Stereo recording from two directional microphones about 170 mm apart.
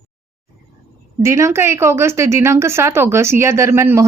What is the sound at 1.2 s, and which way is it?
Speech, 15° right (ahead or behind).